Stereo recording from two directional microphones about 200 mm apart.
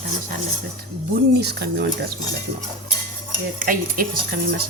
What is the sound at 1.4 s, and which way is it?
Speech, 55° right (ahead or behind).